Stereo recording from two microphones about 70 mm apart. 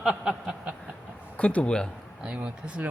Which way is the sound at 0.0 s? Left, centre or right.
Centre.